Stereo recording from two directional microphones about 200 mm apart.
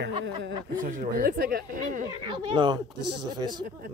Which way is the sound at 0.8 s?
45° right (ahead or behind).